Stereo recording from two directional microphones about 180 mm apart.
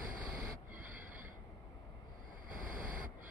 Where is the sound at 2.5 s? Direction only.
50° right (ahead or behind).